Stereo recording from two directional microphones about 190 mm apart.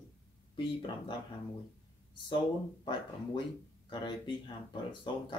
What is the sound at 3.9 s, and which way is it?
Speech, 25° left (ahead or behind).